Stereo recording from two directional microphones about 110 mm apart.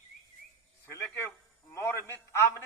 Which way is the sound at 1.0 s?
15° left (ahead or behind).